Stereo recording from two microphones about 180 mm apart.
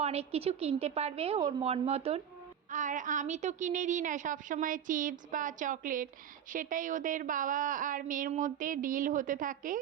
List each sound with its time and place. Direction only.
0.0 s a woman's voice: 35° right (ahead or behind)
2.6 s a woman's voice: 45° right (ahead or behind)